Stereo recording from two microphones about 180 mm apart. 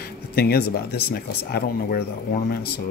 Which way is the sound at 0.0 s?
60° left (ahead or behind).